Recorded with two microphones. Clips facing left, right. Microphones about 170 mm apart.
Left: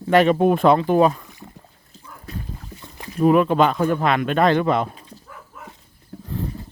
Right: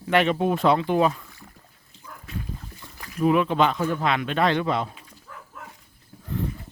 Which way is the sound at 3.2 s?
45° left (ahead or behind).